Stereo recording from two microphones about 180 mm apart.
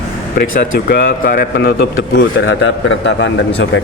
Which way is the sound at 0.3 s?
50° left (ahead or behind).